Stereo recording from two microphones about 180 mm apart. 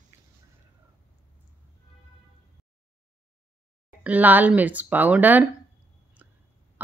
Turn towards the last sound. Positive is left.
turn(degrees=-10)  # may be behind; listen again after turning